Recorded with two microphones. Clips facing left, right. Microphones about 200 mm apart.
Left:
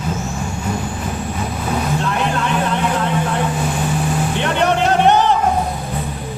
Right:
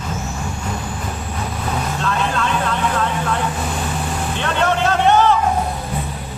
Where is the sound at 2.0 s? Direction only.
15° left (ahead or behind).